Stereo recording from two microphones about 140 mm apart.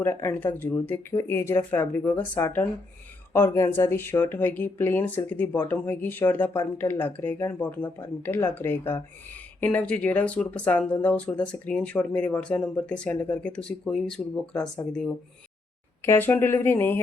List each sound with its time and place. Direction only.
0.0 s speech: 15° left (ahead or behind)